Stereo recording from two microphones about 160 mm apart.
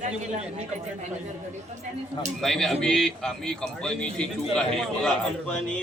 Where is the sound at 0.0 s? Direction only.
45° right (ahead or behind).